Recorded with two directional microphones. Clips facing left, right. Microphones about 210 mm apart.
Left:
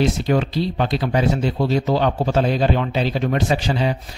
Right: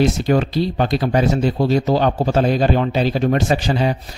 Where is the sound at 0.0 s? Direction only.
45° right (ahead or behind).